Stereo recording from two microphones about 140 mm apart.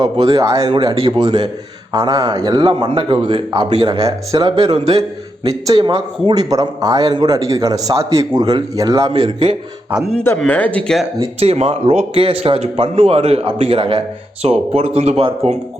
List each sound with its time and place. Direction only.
0.0 s speech: 30° right (ahead or behind)
10.2 s speech: 10° left (ahead or behind)
11.3 s speech: 45° right (ahead or behind)